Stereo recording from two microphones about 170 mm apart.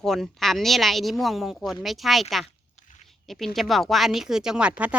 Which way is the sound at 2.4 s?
45° left (ahead or behind).